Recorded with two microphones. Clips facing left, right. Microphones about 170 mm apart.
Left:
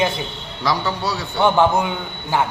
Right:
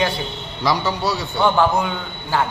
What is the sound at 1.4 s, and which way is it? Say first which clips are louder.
A man's voice: left 2 dB; 20° left (ahead or behind).